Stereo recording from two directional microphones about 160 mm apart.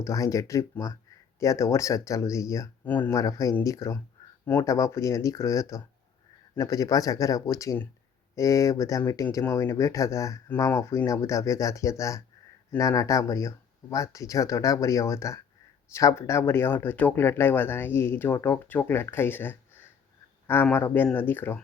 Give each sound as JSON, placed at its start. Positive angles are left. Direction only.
{"t": 0.0, "sound": "speech", "side_deg": 20}
{"t": 20.7, "sound": "speech", "side_deg": 10}